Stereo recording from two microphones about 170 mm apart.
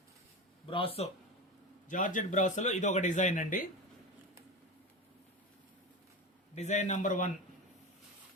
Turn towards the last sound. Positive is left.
turn(degrees=50)  # may be behind; listen again after turning